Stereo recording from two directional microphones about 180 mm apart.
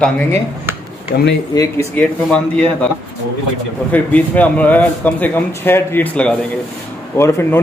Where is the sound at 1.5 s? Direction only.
20° left (ahead or behind).